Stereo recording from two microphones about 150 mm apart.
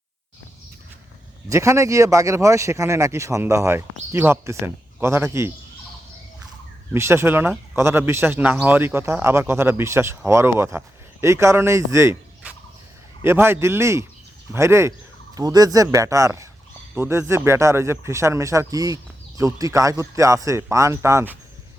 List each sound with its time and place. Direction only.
1.5 s a man's voice: 20° right (ahead or behind)
6.9 s a man's voice: 15° right (ahead or behind)
13.2 s a man's voice: 15° right (ahead or behind)